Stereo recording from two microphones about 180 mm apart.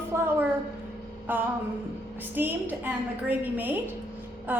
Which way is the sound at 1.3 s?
10° right (ahead or behind).